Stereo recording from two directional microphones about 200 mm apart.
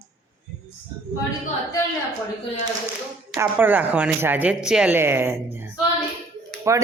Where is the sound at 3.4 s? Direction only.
10° right (ahead or behind).